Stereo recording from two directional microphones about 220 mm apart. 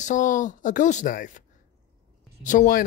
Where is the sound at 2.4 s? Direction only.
35° left (ahead or behind).